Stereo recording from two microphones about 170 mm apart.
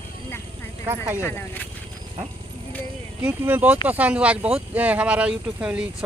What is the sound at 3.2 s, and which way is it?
Speech, 10° right (ahead or behind).